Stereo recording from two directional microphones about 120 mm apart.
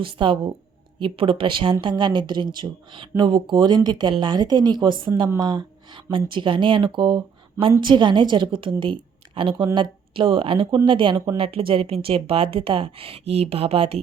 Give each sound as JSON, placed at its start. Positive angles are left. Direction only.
{"t": 0.0, "sound": "speech", "side_deg": -45}